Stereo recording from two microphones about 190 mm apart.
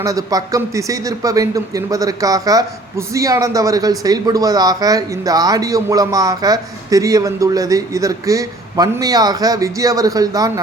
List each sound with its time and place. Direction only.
0.0 s a man's voice: 20° right (ahead or behind)